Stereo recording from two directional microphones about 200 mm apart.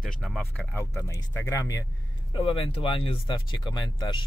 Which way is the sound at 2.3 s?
30° left (ahead or behind).